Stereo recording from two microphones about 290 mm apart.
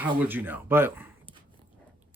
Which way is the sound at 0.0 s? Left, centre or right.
Centre.